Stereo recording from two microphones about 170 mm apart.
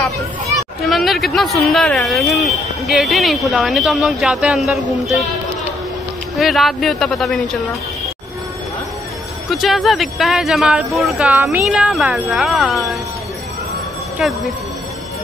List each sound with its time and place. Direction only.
0.8 s speech: centre (ahead or behind)
6.3 s speech: centre (ahead or behind)
9.5 s speech: centre (ahead or behind)
14.1 s speech: centre (ahead or behind)